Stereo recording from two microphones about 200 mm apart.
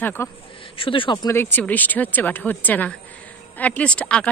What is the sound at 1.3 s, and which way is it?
A woman's voice, 10° left (ahead or behind).